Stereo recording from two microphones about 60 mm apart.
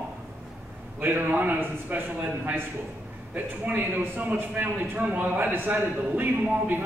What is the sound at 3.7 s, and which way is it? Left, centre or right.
A man's voice, right.